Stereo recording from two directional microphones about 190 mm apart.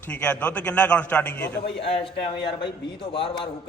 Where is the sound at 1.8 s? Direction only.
30° left (ahead or behind).